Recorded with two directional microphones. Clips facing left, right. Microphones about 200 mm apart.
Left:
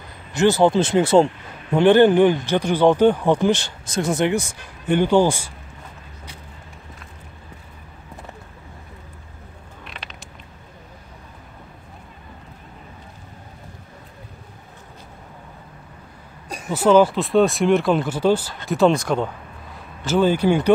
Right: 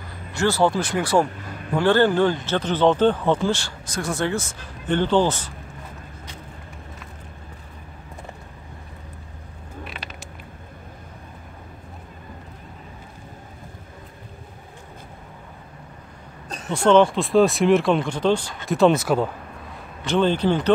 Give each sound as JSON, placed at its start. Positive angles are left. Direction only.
{"t": 0.3, "sound": "speech", "side_deg": 20}
{"t": 9.8, "sound": "a sound", "side_deg": -5}
{"t": 16.4, "sound": "speech", "side_deg": 10}
{"t": 20.1, "sound": "speech", "side_deg": 10}